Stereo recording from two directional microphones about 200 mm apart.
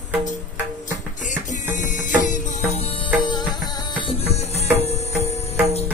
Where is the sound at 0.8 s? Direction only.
40° left (ahead or behind).